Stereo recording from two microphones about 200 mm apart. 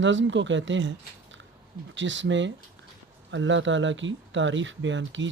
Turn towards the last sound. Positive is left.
turn(degrees=-65)  # may be behind; listen again after turning